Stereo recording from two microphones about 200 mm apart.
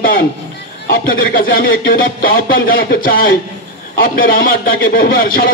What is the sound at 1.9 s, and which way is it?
Speech, 45° left (ahead or behind).